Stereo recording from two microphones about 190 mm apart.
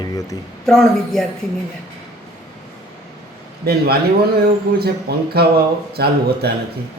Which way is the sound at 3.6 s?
55° right (ahead or behind).